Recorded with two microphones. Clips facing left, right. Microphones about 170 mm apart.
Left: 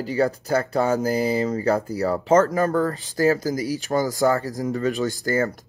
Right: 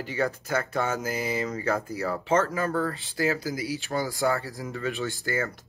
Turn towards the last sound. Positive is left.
turn(degrees=40)  # may be behind; listen again after turning